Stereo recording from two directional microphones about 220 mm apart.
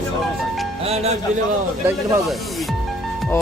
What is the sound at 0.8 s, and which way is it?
Music, 30° right (ahead or behind).